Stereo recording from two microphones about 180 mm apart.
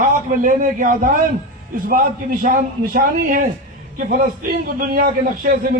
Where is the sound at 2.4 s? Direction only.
50° right (ahead or behind).